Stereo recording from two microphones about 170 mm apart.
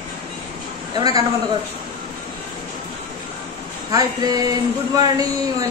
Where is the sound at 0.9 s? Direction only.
20° right (ahead or behind).